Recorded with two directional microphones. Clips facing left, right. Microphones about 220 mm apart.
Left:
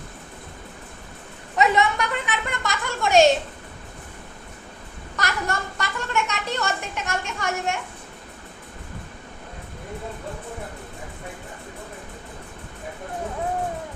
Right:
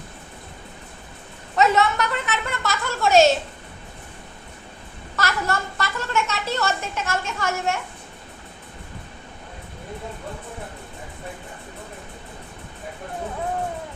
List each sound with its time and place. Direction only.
1.5 s speech: 15° left (ahead or behind)
5.1 s speech: 15° left (ahead or behind)